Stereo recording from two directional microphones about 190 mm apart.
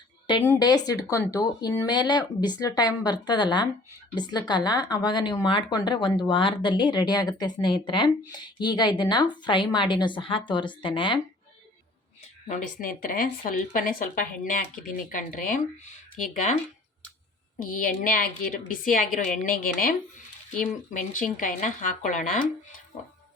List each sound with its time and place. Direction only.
0.4 s a woman's voice: 15° left (ahead or behind)
12.5 s a woman's voice: 45° left (ahead or behind)
17.6 s a woman's voice: 45° left (ahead or behind)